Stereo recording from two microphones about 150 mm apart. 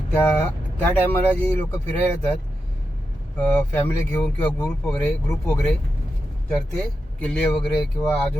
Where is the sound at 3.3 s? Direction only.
10° left (ahead or behind).